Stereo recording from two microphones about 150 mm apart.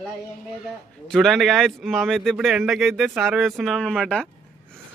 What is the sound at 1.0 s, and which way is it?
Speech, centre (ahead or behind).